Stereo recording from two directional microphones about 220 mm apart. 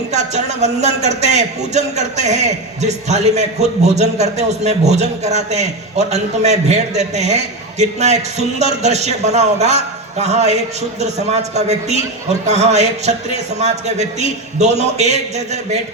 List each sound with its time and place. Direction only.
0.1 s a man's voice: 30° right (ahead or behind)